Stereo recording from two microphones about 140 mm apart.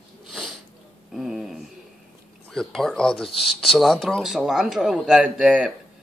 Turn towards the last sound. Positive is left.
turn(degrees=-5)  # may be behind; listen again after turning